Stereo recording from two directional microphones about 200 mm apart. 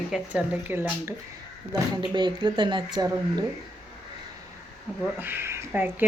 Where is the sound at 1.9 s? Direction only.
20° right (ahead or behind).